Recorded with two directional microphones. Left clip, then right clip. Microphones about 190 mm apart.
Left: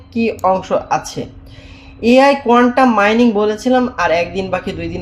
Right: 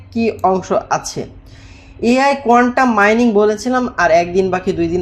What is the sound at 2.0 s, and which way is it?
Speech, 30° right (ahead or behind).